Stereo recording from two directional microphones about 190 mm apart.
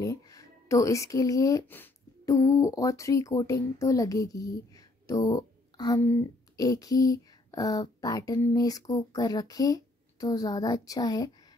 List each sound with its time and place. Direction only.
0.0 s speech: 20° left (ahead or behind)